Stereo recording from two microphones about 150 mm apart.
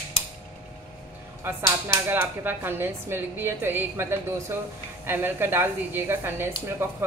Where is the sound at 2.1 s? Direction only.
15° right (ahead or behind).